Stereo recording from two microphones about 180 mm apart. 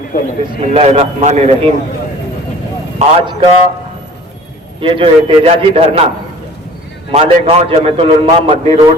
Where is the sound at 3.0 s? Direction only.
35° right (ahead or behind).